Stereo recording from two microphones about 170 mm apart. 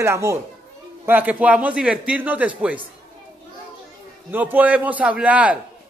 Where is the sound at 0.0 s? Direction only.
15° right (ahead or behind).